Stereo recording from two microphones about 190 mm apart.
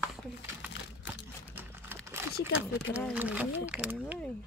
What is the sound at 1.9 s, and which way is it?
Crumpling, 10° right (ahead or behind).